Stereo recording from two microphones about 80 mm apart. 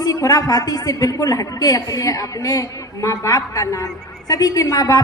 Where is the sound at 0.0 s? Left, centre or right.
Left.